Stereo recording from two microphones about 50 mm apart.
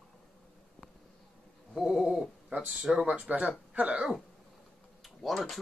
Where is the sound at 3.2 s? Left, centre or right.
Right.